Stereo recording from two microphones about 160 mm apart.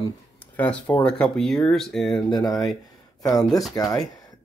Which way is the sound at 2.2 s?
25° left (ahead or behind).